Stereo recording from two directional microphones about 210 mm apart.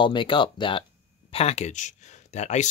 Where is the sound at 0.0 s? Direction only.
25° left (ahead or behind).